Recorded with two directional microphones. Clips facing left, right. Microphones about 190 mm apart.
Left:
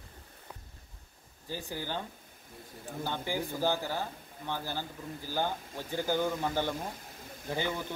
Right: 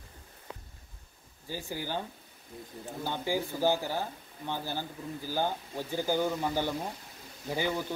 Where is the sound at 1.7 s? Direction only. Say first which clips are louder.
Right 3 dB; 15° right (ahead or behind).